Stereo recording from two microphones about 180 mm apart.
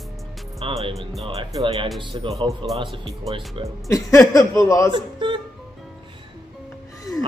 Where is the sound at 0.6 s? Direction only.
30° right (ahead or behind).